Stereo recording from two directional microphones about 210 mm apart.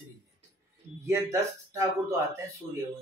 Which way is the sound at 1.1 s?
15° right (ahead or behind).